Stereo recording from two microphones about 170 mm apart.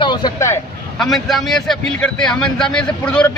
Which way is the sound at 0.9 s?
Centre (ahead or behind).